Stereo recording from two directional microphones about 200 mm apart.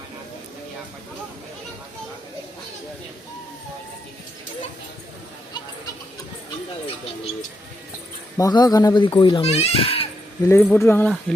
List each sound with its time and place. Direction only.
8.4 s speech: 20° left (ahead or behind)
10.5 s speech: 10° left (ahead or behind)